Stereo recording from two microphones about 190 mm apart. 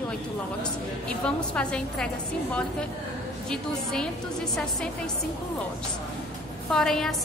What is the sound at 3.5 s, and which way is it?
Speech, 5° left (ahead or behind).